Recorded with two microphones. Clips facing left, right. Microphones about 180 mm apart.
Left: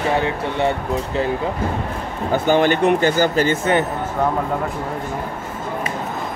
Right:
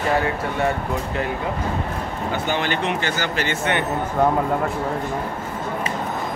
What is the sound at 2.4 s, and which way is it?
Speech, 45° left (ahead or behind).